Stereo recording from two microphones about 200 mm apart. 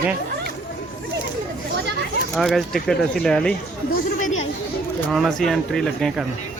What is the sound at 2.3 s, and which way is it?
Speech, centre (ahead or behind).